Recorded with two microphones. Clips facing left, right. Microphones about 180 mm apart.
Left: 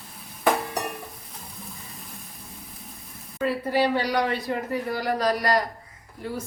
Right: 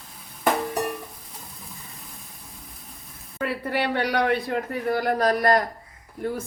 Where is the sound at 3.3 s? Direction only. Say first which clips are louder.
Left 3 dB; 60° right (ahead or behind).